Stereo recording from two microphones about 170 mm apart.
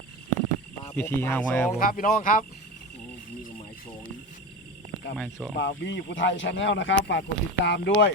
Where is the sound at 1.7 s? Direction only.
55° left (ahead or behind).